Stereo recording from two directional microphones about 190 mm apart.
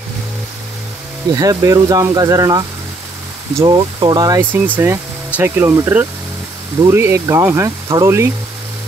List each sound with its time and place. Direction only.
1.3 s speech: 20° right (ahead or behind)